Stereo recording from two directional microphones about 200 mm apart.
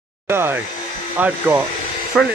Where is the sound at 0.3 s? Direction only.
10° right (ahead or behind).